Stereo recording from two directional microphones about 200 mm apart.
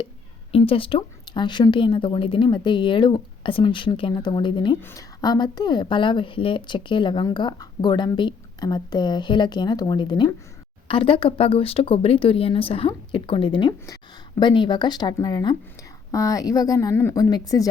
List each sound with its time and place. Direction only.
0.5 s a woman's voice: 30° left (ahead or behind)